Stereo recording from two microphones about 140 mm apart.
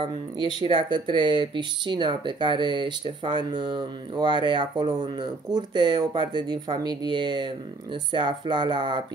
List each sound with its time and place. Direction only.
0.5 s speech: 35° right (ahead or behind)